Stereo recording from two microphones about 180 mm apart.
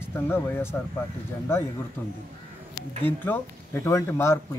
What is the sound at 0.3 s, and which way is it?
Speech, 15° left (ahead or behind).